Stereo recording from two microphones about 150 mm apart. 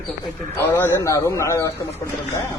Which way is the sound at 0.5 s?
15° left (ahead or behind).